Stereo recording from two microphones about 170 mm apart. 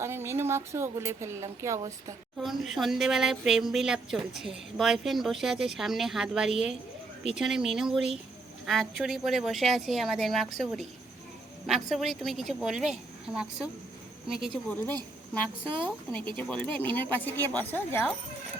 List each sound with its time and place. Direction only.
0.0 s speech: 15° right (ahead or behind)
2.4 s speech: centre (ahead or behind)
16.3 s speech: 5° left (ahead or behind)